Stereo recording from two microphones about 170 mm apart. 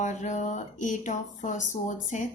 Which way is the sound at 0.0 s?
45° left (ahead or behind).